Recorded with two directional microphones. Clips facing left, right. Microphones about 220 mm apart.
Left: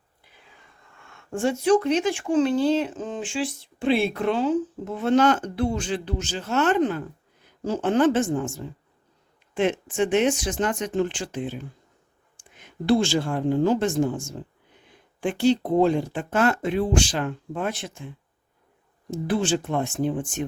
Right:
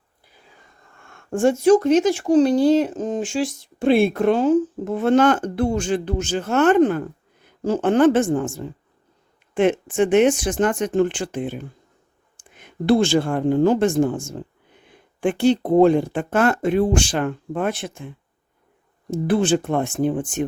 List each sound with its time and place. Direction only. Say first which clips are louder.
0.9 s speech: right 6 dB; 50° right (ahead or behind)
19.1 s speech: right 5 dB; 55° right (ahead or behind)